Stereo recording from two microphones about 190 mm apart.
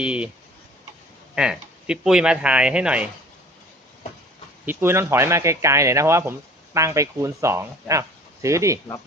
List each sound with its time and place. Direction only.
0.0 s speech: 5° right (ahead or behind)
1.4 s speech: 5° right (ahead or behind)
4.6 s speech: 10° right (ahead or behind)